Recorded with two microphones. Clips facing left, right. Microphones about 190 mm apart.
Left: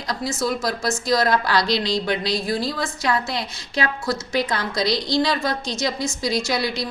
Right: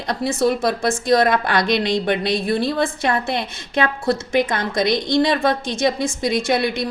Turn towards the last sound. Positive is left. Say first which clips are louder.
# right 4 dB
turn(degrees=-55)  # may be behind; listen again after turning